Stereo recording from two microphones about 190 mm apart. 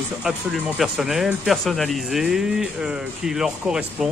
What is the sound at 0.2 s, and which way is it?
A man's voice, centre (ahead or behind).